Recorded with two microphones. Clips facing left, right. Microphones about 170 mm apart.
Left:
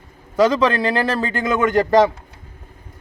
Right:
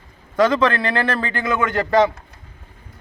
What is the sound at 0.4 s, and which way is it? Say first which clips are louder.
Speech: left 1 dB; 35° left (ahead or behind).